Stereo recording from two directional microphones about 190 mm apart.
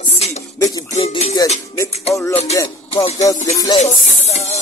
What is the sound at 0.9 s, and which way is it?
Speech, 35° left (ahead or behind).